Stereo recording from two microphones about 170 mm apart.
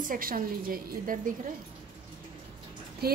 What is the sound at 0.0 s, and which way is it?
A woman's voice, 55° right (ahead or behind).